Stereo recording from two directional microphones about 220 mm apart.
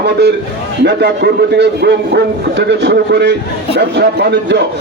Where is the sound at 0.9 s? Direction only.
50° right (ahead or behind).